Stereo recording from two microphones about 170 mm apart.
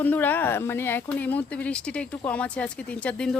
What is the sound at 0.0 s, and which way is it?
Speech, 10° left (ahead or behind).